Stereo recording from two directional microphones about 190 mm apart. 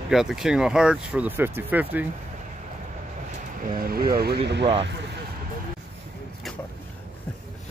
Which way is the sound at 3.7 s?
50° right (ahead or behind).